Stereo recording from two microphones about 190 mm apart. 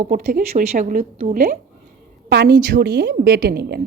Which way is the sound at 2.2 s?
60° right (ahead or behind).